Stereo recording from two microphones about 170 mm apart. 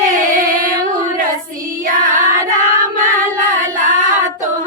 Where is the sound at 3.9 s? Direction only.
50° right (ahead or behind).